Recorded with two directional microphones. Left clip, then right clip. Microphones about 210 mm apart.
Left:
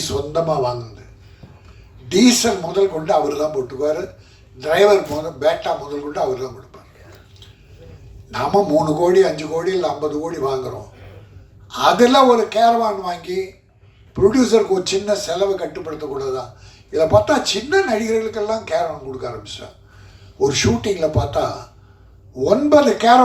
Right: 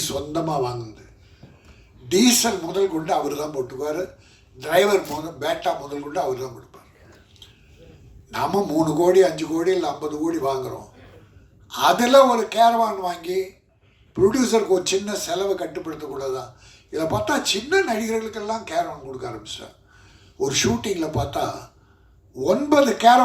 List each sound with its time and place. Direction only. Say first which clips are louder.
0.0 s speech: left 5 dB; 55° right (ahead or behind)
2.0 s speech: left 3 dB; 55° right (ahead or behind)
8.3 s speech: left 6 dB; 50° right (ahead or behind)
11.7 s speech: left 2 dB; 50° right (ahead or behind)